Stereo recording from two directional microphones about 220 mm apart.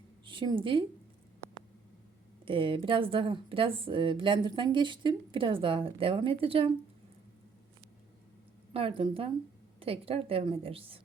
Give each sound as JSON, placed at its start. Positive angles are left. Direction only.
{"t": 0.3, "sound": "a woman's voice", "side_deg": -20}
{"t": 2.4, "sound": "a woman's voice", "side_deg": -25}
{"t": 8.7, "sound": "a woman's voice", "side_deg": -25}